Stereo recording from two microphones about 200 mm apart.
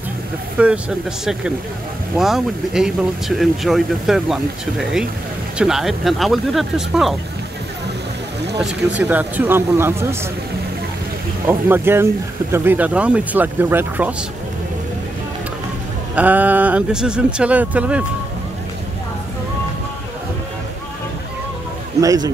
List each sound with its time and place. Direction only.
0.6 s speech: 5° right (ahead or behind)
8.5 s speech: 5° right (ahead or behind)
11.4 s speech: 10° right (ahead or behind)
16.2 s speech: 10° right (ahead or behind)
22.0 s speech: 20° right (ahead or behind)